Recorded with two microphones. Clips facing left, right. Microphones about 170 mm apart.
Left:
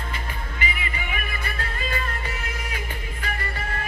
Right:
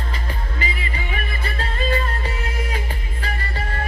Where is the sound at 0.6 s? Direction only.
35° right (ahead or behind).